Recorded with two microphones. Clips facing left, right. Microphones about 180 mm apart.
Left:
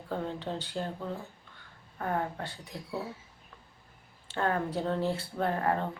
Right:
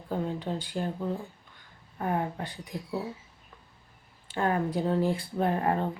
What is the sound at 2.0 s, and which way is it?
Speech, 15° right (ahead or behind).